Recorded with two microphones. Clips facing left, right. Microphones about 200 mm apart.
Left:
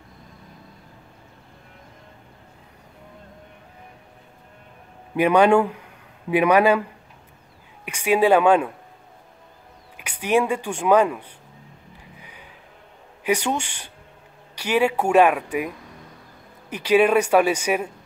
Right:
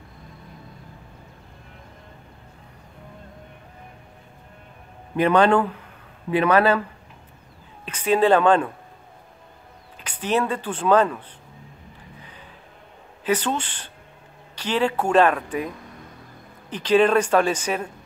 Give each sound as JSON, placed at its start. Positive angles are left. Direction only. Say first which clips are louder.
{"t": 5.1, "sound": "speech", "louder": "left 1 dB", "side_deg": 10}
{"t": 7.8, "sound": "speech", "louder": "even", "side_deg": 10}
{"t": 9.9, "sound": "speech", "louder": "left 3 dB", "side_deg": 10}
{"t": 12.2, "sound": "music", "louder": "right 1 dB", "side_deg": 10}
{"t": 13.2, "sound": "speech", "louder": "left 1 dB", "side_deg": 15}
{"t": 16.7, "sound": "speech", "louder": "even", "side_deg": 10}